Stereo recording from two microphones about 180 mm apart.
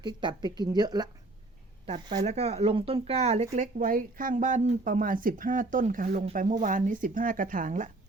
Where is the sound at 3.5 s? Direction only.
50° right (ahead or behind).